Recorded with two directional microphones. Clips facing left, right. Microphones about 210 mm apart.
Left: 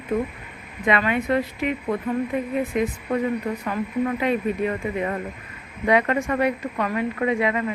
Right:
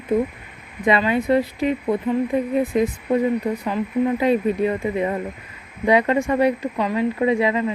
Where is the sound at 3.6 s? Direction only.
20° right (ahead or behind).